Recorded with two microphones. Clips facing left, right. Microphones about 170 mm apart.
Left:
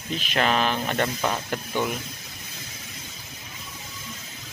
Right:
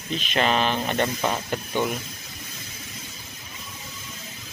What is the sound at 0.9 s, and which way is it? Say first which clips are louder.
Speech: right 1 dB; 10° right (ahead or behind).